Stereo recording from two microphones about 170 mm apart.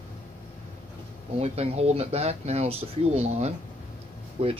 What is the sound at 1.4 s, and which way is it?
Speech, 40° right (ahead or behind).